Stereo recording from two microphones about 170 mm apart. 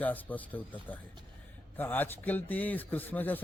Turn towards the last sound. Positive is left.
turn(degrees=10)  # may be behind; listen again after turning